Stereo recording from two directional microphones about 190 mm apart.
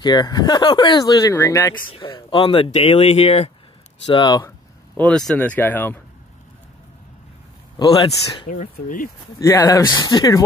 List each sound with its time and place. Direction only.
0.0 s speech: 20° left (ahead or behind)
5.0 s speech: 5° left (ahead or behind)
7.8 s speech: 25° left (ahead or behind)
8.5 s speech: 45° left (ahead or behind)
9.4 s speech: 15° left (ahead or behind)